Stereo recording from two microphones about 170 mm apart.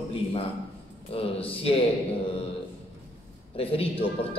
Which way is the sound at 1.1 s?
35° left (ahead or behind).